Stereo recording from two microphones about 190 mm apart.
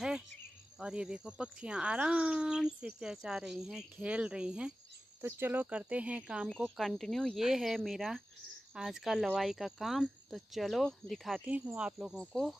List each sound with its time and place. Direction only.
0.7 s speech: 5° right (ahead or behind)